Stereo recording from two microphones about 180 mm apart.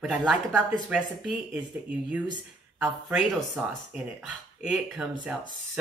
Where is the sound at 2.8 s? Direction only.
5° right (ahead or behind).